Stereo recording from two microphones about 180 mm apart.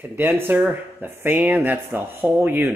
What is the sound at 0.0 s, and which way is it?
Speech, 10° right (ahead or behind).